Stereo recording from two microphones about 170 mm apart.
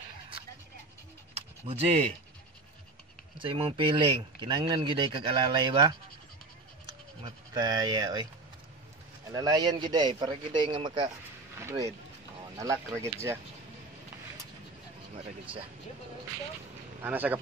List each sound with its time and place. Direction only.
1.7 s speech: 35° right (ahead or behind)
3.3 s speech: 30° right (ahead or behind)
7.2 s speech: 25° right (ahead or behind)
9.3 s speech: 25° right (ahead or behind)
15.1 s speech: 30° right (ahead or behind)
17.0 s speech: 10° right (ahead or behind)